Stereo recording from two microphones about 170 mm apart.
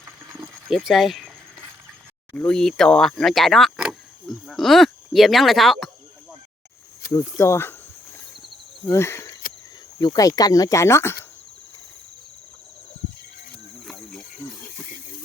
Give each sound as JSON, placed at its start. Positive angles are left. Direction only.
{"t": 0.3, "sound": "a sound", "side_deg": 0}
{"t": 2.3, "sound": "speech", "side_deg": 5}
{"t": 7.0, "sound": "insect", "side_deg": 20}
{"t": 7.3, "sound": "speech", "side_deg": 15}
{"t": 8.9, "sound": "speech", "side_deg": 15}
{"t": 13.8, "sound": "cricket", "side_deg": 5}